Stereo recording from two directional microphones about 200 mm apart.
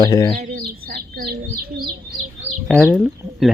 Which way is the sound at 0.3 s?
50° right (ahead or behind).